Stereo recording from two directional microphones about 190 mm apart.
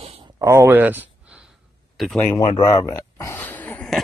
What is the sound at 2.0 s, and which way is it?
Speech, 5° left (ahead or behind).